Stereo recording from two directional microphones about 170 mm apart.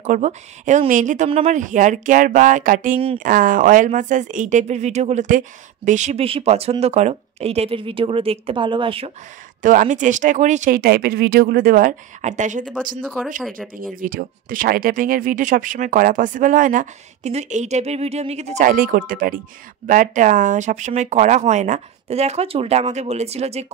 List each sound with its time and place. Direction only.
0.0 s speech: 45° right (ahead or behind)
9.6 s speech: 50° right (ahead or behind)
13.0 s speech: 5° left (ahead or behind)
13.5 s speech: 55° right (ahead or behind); by 23.7 s 40° right (ahead or behind)